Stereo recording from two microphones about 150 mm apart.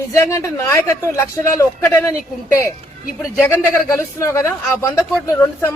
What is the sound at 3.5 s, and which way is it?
Speech, 20° left (ahead or behind).